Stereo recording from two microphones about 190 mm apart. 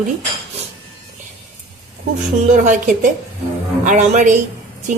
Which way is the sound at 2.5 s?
40° right (ahead or behind).